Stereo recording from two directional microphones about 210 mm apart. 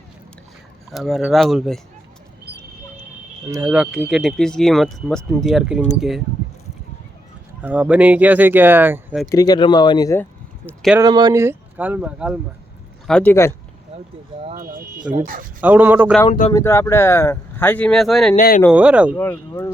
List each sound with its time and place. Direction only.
0.9 s speech: centre (ahead or behind)
3.4 s speech: 10° right (ahead or behind)
7.6 s speech: 5° right (ahead or behind)
9.3 s speech: 20° left (ahead or behind)
11.0 s speech: 20° right (ahead or behind)
13.1 s speech: 5° left (ahead or behind)
14.5 s speech: 40° right (ahead or behind)
15.6 s speech: 10° right (ahead or behind)
16.5 s speech: 15° left (ahead or behind)
18.3 s speech: 40° left (ahead or behind)
18.7 s speech: 5° right (ahead or behind)
19.1 s speech: 10° left (ahead or behind)